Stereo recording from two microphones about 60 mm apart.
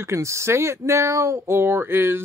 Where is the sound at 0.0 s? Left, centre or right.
Right.